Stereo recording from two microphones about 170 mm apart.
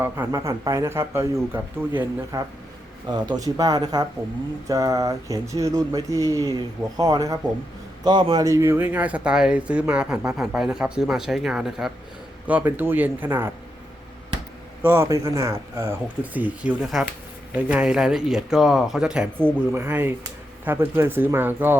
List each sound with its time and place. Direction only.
0.0 s speech: 15° right (ahead or behind)
14.8 s speech: 15° right (ahead or behind)